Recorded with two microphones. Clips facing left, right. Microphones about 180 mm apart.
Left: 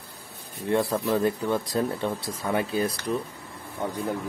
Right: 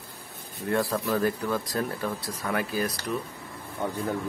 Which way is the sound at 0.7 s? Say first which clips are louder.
Left 2 dB; 20° left (ahead or behind).